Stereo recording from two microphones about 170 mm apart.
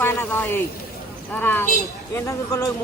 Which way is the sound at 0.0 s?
10° left (ahead or behind).